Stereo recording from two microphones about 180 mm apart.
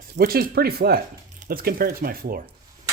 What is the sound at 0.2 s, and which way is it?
Speech, 60° right (ahead or behind).